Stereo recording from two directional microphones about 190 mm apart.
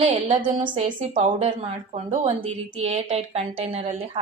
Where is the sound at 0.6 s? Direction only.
25° right (ahead or behind).